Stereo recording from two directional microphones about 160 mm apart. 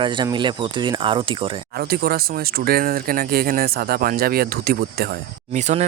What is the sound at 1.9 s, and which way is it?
Speech, 70° right (ahead or behind).